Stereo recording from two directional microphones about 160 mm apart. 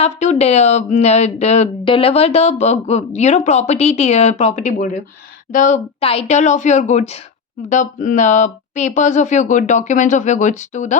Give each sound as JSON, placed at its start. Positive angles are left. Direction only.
{"t": 0.0, "sound": "speech", "side_deg": 45}